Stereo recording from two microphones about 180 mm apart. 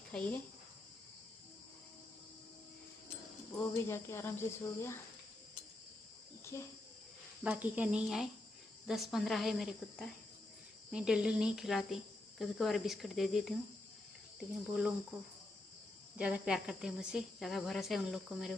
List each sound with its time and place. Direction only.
0.1 s speech: 10° left (ahead or behind)
3.5 s speech: 15° left (ahead or behind)
6.5 s speech: 15° left (ahead or behind)
7.4 s speech: 10° right (ahead or behind)
16.2 s speech: 5° right (ahead or behind)